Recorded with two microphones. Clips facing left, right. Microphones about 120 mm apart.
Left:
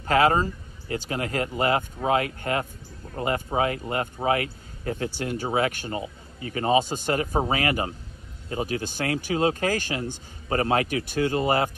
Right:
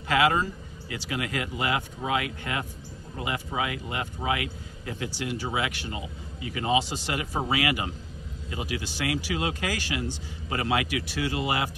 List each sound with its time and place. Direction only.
0.1 s speech: 45° left (ahead or behind)
7.3 s speech: 40° left (ahead or behind)